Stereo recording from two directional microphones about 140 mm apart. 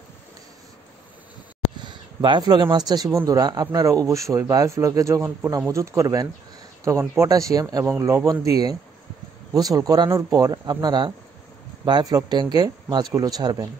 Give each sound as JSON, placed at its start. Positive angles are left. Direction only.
{"t": 1.8, "sound": "speech", "side_deg": -35}